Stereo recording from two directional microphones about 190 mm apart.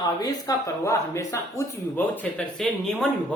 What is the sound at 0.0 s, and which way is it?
Speech, 20° left (ahead or behind).